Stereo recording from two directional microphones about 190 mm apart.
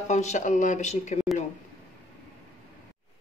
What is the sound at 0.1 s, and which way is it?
Speech, 40° left (ahead or behind).